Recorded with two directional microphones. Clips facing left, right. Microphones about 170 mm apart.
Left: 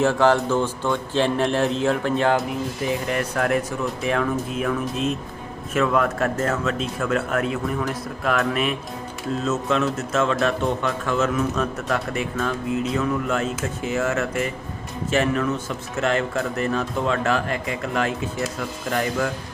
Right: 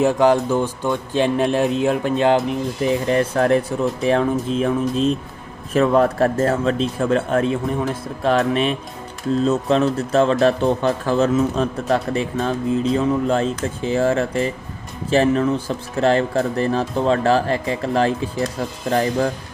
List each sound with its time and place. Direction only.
0.0 s speech: 15° right (ahead or behind)
3.1 s a man's voice: 30° right (ahead or behind)